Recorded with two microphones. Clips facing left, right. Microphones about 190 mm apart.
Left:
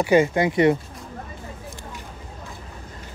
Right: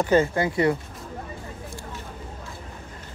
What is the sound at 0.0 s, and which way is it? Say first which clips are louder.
Speech: left 3 dB; 15° left (ahead or behind).